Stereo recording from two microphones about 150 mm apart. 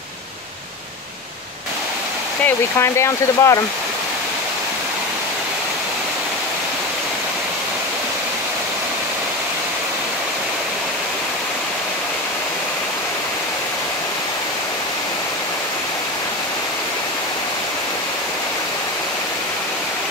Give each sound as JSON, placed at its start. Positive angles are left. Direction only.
{"t": 2.4, "sound": "speech", "side_deg": 20}